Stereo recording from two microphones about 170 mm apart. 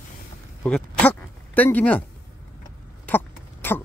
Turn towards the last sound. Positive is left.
turn(degrees=10)  # may be behind; listen again after turning